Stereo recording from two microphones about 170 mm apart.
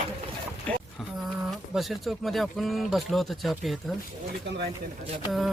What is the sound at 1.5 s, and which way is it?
Speech, centre (ahead or behind).